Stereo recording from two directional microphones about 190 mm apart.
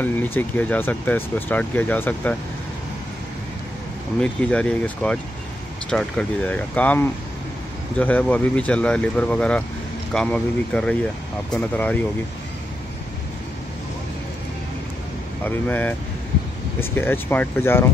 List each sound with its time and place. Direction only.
0.0 s speech: 10° left (ahead or behind)
4.2 s speech: 5° left (ahead or behind)
15.4 s speech: 10° left (ahead or behind)